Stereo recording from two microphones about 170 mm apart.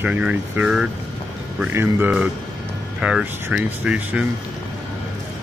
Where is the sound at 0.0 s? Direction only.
10° right (ahead or behind).